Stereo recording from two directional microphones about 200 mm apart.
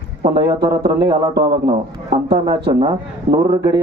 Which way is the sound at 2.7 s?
20° right (ahead or behind).